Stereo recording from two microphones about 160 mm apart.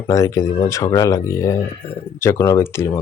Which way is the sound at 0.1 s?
20° left (ahead or behind).